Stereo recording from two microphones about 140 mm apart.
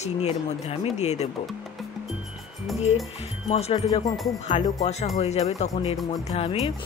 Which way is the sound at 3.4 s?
50° left (ahead or behind).